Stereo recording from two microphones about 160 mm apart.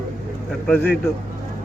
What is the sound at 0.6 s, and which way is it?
Speech, 10° left (ahead or behind).